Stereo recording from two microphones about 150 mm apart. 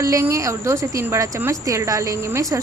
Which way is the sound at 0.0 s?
20° right (ahead or behind).